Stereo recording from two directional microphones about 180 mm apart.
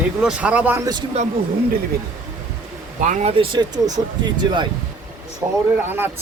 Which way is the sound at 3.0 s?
45° right (ahead or behind).